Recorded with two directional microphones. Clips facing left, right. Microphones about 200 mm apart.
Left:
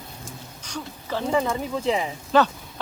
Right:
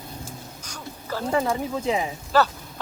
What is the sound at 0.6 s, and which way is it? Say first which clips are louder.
Speech: left 4 dB; 5° right (ahead or behind).